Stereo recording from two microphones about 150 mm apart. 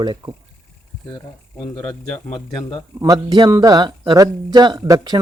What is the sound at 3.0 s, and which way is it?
Speech, 25° right (ahead or behind).